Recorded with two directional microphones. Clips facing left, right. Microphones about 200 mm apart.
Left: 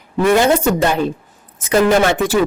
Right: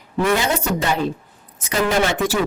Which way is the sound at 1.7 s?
55° left (ahead or behind).